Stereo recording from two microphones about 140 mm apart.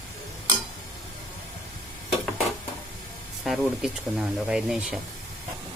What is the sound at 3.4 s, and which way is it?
Speech, 5° right (ahead or behind).